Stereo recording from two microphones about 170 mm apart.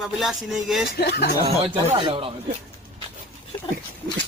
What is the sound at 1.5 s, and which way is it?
Speech, 35° right (ahead or behind).